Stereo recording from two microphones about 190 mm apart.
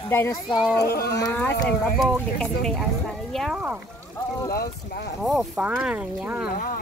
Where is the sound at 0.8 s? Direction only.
55° left (ahead or behind).